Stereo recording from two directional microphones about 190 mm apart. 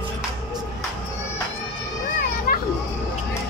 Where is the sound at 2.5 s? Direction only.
50° left (ahead or behind).